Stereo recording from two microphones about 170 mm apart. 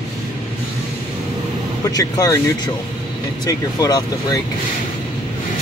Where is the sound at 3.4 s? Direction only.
20° left (ahead or behind).